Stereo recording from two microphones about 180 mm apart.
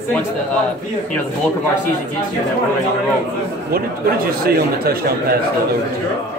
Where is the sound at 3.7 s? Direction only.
55° right (ahead or behind).